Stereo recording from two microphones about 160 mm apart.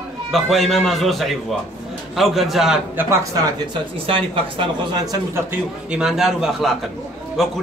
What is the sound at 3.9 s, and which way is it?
Speech, 35° right (ahead or behind).